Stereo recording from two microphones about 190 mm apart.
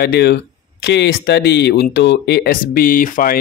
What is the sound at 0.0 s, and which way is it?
Speech, 60° left (ahead or behind).